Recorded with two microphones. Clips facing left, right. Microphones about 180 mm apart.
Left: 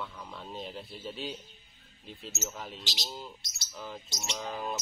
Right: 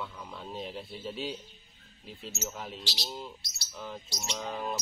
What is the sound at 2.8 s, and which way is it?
Speech, 20° left (ahead or behind).